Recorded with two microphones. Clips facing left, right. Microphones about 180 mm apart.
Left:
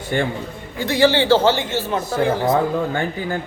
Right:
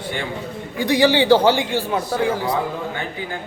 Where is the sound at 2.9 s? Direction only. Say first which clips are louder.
Left 5 dB; 45° left (ahead or behind).